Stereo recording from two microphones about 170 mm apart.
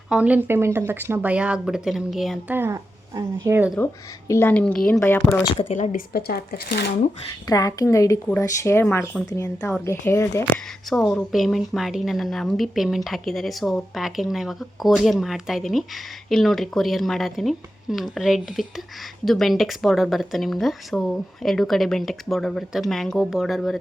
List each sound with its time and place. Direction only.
0.1 s speech: 10° right (ahead or behind)
2.6 s speech: 15° right (ahead or behind)
4.3 s speech: 10° left (ahead or behind)
5.5 s speech: 45° left (ahead or behind); by 6.8 s 70° left (ahead or behind)
7.4 s speech: 20° left (ahead or behind)
9.6 s a woman's voice: 5° left (ahead or behind)
10.1 s speech: 15° left (ahead or behind)
10.8 s a woman's voice: centre (ahead or behind)